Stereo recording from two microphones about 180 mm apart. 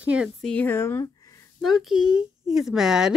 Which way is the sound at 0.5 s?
10° left (ahead or behind).